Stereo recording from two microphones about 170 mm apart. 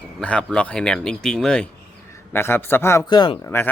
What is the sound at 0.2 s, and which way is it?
A man's voice, 5° left (ahead or behind).